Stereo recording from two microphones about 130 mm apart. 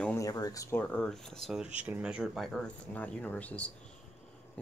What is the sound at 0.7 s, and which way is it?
Speech, 5° left (ahead or behind).